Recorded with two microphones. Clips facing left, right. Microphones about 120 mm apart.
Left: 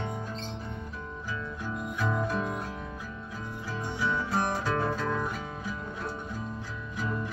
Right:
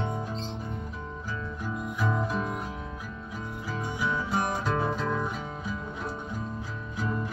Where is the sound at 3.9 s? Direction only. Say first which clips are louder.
Even; 15° right (ahead or behind).